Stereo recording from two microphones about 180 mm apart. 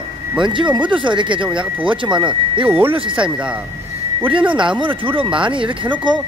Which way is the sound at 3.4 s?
5° right (ahead or behind).